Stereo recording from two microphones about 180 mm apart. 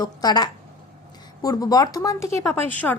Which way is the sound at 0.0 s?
20° left (ahead or behind).